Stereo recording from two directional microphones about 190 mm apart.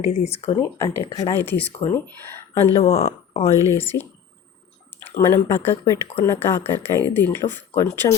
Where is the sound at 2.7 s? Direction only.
30° left (ahead or behind).